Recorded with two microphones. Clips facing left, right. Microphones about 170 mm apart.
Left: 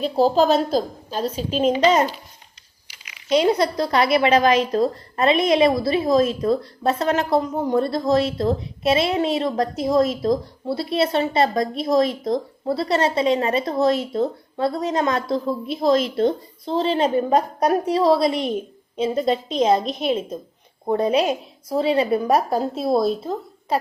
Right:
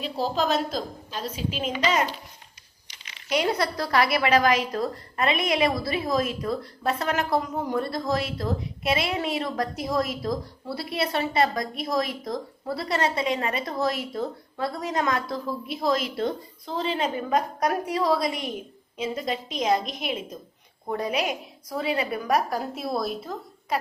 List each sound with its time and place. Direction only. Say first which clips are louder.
0.0 s a woman's voice: left 9 dB; 35° left (ahead or behind)
3.2 s a woman's voice: left 7 dB; 20° left (ahead or behind)